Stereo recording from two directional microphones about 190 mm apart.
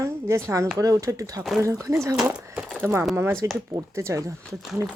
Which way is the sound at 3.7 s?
15° right (ahead or behind).